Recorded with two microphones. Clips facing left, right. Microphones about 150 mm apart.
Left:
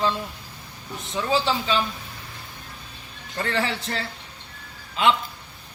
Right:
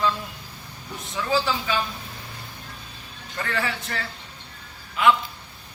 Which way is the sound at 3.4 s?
30° left (ahead or behind).